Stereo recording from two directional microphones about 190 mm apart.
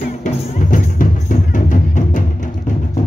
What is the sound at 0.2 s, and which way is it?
Music, 40° left (ahead or behind).